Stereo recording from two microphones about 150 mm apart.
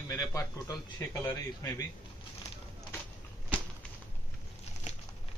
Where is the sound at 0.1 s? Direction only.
20° left (ahead or behind).